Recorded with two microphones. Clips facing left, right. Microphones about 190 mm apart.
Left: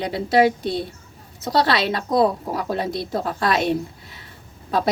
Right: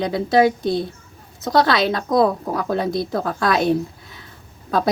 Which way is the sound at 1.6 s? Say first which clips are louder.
Right 2 dB; 25° left (ahead or behind).